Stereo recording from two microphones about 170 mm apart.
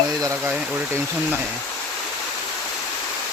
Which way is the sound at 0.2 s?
20° right (ahead or behind).